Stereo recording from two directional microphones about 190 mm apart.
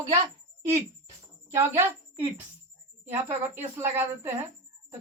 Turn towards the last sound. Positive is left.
turn(degrees=-10)  # may be behind; listen again after turning